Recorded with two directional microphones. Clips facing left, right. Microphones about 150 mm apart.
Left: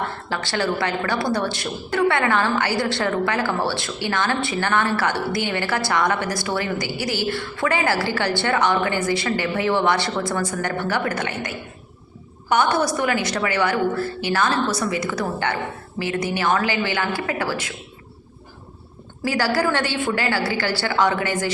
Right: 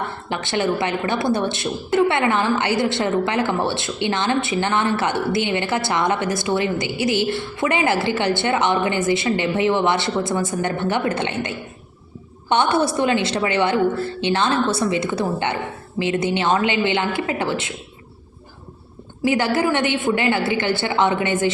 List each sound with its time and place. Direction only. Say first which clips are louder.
0.3 s a woman's voice: right 3 dB; 20° right (ahead or behind)
19.2 s a woman's voice: right 2 dB; 20° right (ahead or behind)